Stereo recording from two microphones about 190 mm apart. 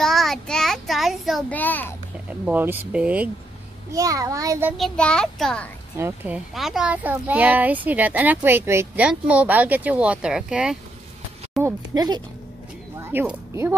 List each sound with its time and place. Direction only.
0.0 s child singing: centre (ahead or behind)
2.4 s a child's voice: 10° right (ahead or behind)
3.9 s a child's voice: 20° right (ahead or behind)
4.7 s a child's voice: 5° left (ahead or behind)
5.9 s a child's voice: 10° right (ahead or behind)
11.6 s speech: 20° right (ahead or behind)